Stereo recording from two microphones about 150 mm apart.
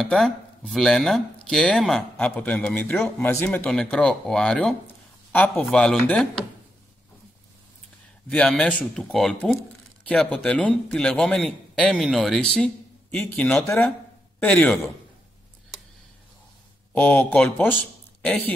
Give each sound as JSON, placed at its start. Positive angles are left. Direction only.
{"t": 0.0, "sound": "a man's voice", "side_deg": 5}
{"t": 8.3, "sound": "a man's voice", "side_deg": 5}
{"t": 16.9, "sound": "speech", "side_deg": 10}